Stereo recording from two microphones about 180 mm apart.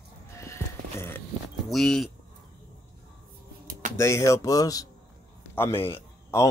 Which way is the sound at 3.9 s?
15° left (ahead or behind).